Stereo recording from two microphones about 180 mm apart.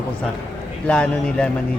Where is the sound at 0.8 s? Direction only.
5° left (ahead or behind).